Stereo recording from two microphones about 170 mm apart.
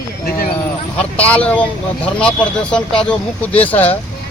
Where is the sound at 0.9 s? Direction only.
10° left (ahead or behind).